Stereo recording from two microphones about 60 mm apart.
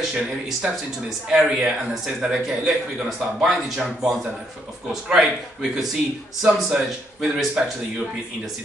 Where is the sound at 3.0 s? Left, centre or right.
Centre.